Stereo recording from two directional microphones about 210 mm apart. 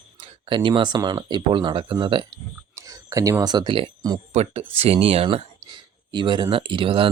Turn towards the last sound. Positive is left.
turn(degrees=-25)  # may be behind; listen again after turning